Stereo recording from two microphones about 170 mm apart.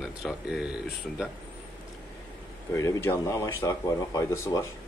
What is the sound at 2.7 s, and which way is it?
Speech, 20° left (ahead or behind).